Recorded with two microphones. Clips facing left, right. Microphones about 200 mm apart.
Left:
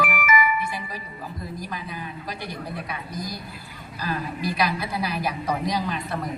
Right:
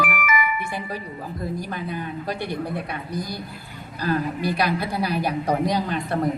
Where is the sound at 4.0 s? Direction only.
55° right (ahead or behind).